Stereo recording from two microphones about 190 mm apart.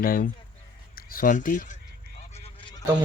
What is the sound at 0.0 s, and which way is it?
Speech, 50° left (ahead or behind).